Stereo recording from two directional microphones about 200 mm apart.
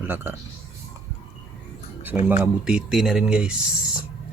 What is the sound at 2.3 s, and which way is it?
Speech, 5° right (ahead or behind).